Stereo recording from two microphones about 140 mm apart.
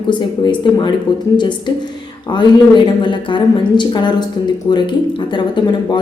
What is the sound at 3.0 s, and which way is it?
A woman's voice, 35° left (ahead or behind).